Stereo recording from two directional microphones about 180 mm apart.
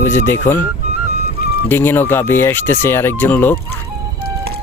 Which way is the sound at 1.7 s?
10° left (ahead or behind).